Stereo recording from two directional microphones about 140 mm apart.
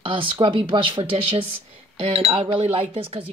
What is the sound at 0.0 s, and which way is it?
Speech, 35° right (ahead or behind).